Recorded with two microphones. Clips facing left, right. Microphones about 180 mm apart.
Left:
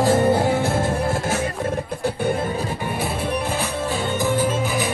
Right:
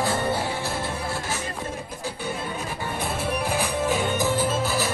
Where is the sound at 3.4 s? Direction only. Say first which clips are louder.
Even; 15° right (ahead or behind).